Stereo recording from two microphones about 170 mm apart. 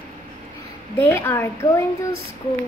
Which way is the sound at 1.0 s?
15° left (ahead or behind).